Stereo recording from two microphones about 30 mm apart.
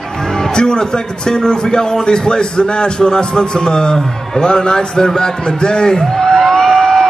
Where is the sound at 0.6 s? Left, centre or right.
Left.